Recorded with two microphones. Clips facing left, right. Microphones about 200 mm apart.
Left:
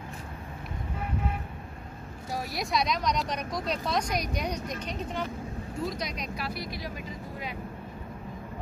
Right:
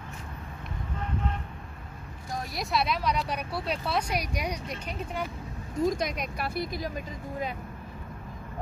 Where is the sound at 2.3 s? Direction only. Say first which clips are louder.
Even; centre (ahead or behind).